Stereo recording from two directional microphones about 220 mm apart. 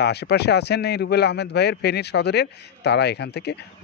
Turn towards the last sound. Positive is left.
turn(degrees=50)  # may be behind; listen again after turning